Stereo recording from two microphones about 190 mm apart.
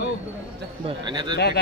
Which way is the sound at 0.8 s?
25° right (ahead or behind).